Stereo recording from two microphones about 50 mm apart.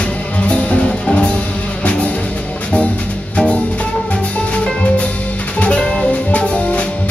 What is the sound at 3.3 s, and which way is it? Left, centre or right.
Music, left.